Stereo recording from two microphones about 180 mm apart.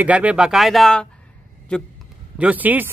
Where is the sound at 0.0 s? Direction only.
10° right (ahead or behind).